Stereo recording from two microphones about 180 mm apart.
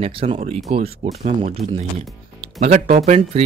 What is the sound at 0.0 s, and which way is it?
Speech, 35° right (ahead or behind).